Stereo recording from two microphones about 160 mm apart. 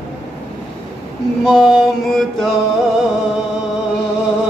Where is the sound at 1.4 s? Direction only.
Centre (ahead or behind).